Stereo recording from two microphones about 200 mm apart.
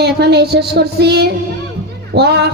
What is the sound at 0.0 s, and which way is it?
Speech, 55° right (ahead or behind).